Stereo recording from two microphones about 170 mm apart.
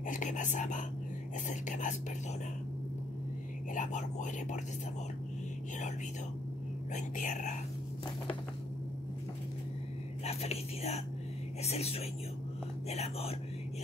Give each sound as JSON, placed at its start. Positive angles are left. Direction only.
{"t": 0.0, "sound": "speech", "side_deg": 50}
{"t": 3.7, "sound": "speech", "side_deg": 45}
{"t": 6.9, "sound": "speech", "side_deg": 45}
{"t": 10.2, "sound": "speech", "side_deg": 40}